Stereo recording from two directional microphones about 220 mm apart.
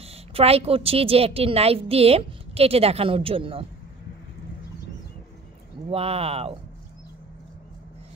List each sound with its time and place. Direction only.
0.0 s a woman's voice: 25° right (ahead or behind)
5.9 s a woman's voice: 25° right (ahead or behind)